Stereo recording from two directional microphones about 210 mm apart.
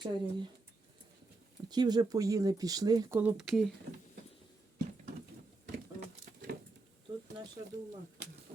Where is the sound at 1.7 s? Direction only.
20° right (ahead or behind); by 3.7 s centre (ahead or behind).